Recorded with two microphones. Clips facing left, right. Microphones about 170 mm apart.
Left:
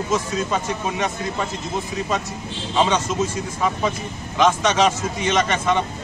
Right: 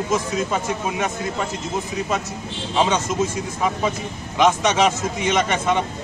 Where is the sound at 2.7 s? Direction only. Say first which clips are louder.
Even; 10° right (ahead or behind).